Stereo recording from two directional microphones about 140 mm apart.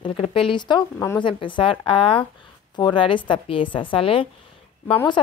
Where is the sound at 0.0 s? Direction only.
40° left (ahead or behind).